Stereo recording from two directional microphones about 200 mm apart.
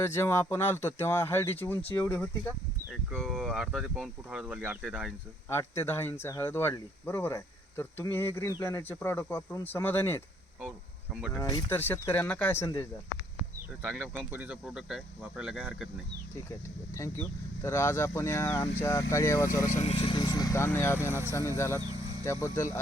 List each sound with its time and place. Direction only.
0.0 s speech: 10° left (ahead or behind); by 5.1 s 5° right (ahead or behind)
5.5 s speech: 10° left (ahead or behind)
11.3 s speech: 15° left (ahead or behind)
13.8 s speech: 10° right (ahead or behind)
16.9 s speech: 15° left (ahead or behind)
19.5 s speech: 40° left (ahead or behind); by 21.1 s 15° left (ahead or behind)
21.1 s speech: 15° right (ahead or behind)
21.3 s speech: 15° left (ahead or behind)